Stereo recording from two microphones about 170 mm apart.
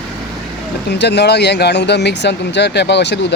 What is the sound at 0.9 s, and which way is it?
Speech, 85° left.